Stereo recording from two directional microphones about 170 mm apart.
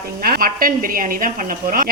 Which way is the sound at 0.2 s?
60° right (ahead or behind).